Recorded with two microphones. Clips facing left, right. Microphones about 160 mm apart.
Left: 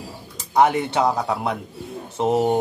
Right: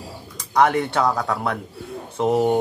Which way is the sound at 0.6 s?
20° left (ahead or behind).